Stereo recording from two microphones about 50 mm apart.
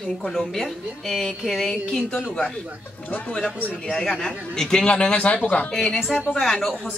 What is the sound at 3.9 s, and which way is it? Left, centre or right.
Speech, centre.